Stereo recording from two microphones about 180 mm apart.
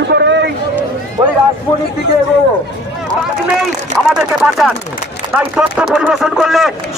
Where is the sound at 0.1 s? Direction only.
70° right (ahead or behind).